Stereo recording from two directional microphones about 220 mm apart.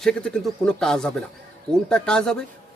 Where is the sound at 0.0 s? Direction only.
5° left (ahead or behind).